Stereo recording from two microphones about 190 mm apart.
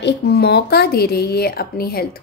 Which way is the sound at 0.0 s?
60° left (ahead or behind).